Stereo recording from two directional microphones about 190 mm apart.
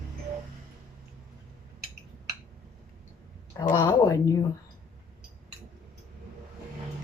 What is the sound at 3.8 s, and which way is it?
Speech, 15° left (ahead or behind).